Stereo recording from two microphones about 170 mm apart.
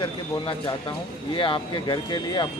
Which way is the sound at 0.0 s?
30° left (ahead or behind).